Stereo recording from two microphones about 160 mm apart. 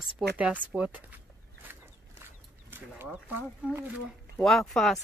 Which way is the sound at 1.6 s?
15° right (ahead or behind).